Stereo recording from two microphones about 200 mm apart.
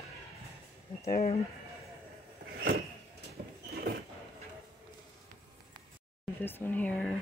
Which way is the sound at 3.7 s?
50° right (ahead or behind).